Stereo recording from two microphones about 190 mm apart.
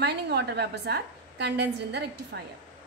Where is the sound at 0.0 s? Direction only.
60° right (ahead or behind).